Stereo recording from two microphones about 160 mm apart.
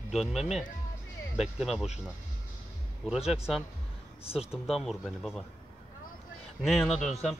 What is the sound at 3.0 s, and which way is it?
Speech, centre (ahead or behind).